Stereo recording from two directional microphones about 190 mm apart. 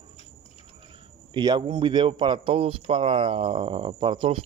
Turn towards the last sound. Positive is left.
turn(degrees=-25)  # may be behind; listen again after turning